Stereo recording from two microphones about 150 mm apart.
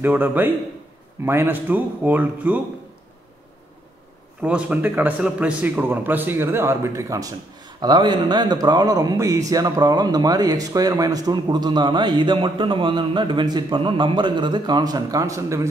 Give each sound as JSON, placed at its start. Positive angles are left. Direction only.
{"t": 0.0, "sound": "a man's voice", "side_deg": -10}
{"t": 4.4, "sound": "a man's voice", "side_deg": -10}